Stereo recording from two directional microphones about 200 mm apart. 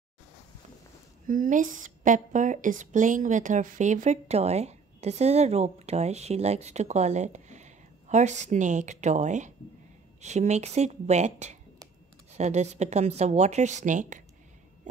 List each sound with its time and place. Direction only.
1.2 s a woman's voice: 45° right (ahead or behind)